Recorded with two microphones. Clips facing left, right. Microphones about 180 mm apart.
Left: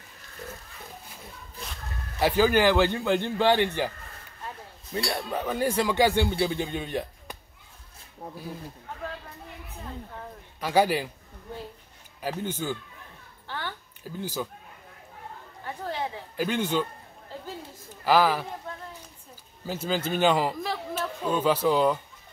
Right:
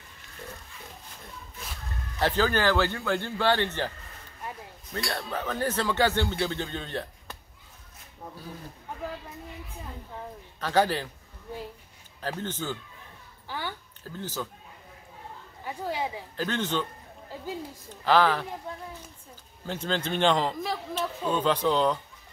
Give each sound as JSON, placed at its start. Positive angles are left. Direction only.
{"t": 2.1, "sound": "speech", "side_deg": 10}
{"t": 4.9, "sound": "speech", "side_deg": 10}
{"t": 10.6, "sound": "speech", "side_deg": 10}
{"t": 12.2, "sound": "speech", "side_deg": 10}
{"t": 13.5, "sound": "a sound", "side_deg": -10}
{"t": 14.0, "sound": "speech", "side_deg": 10}
{"t": 15.6, "sound": "speech", "side_deg": -10}
{"t": 16.3, "sound": "speech", "side_deg": 10}
{"t": 18.0, "sound": "speech", "side_deg": 10}
{"t": 19.6, "sound": "speech", "side_deg": 5}